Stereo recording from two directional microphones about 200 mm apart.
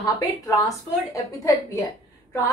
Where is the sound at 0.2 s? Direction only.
15° left (ahead or behind).